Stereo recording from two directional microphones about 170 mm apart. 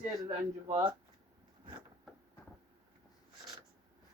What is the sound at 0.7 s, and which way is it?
Speech, 25° right (ahead or behind).